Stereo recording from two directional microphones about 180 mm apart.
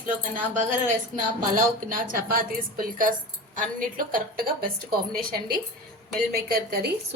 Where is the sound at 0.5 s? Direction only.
45° right (ahead or behind).